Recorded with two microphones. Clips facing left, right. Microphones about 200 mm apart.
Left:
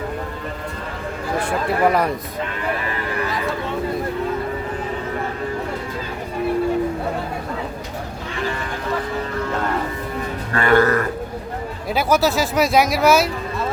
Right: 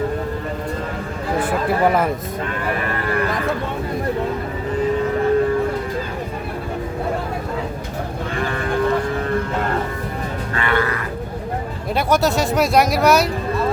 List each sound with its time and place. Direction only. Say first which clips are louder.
1.5 s speech: even; centre (ahead or behind)
8.4 s sheep: right 4 dB; 55° right (ahead or behind)
10.5 s music: left 6 dB; 40° left (ahead or behind)
11.9 s speech: even; centre (ahead or behind)